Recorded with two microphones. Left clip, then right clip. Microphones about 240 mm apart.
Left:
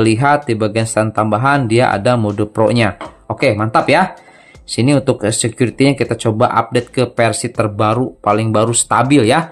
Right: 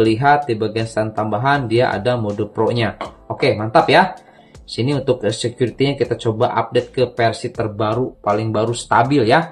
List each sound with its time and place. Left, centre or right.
0.0 s speech: left